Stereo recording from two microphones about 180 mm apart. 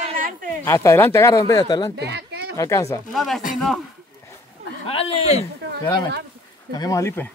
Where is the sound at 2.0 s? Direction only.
70° right (ahead or behind).